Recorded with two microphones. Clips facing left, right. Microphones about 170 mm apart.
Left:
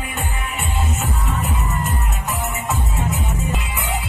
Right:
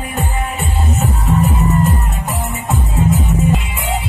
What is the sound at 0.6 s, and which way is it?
Music, 35° right (ahead or behind).